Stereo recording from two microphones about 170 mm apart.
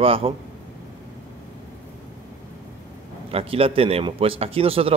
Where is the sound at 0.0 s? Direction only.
35° right (ahead or behind).